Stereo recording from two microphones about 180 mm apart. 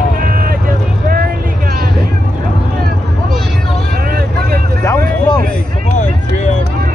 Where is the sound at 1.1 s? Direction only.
55° right (ahead or behind).